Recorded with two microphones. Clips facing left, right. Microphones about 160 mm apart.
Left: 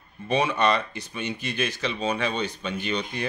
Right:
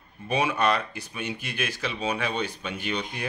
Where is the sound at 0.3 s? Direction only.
5° right (ahead or behind).